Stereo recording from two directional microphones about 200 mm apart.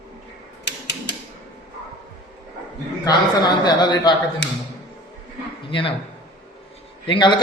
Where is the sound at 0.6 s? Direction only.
60° left (ahead or behind).